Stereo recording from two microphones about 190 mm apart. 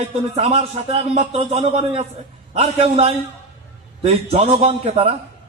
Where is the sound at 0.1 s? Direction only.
30° right (ahead or behind).